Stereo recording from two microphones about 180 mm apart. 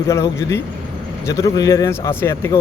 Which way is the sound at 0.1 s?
15° left (ahead or behind).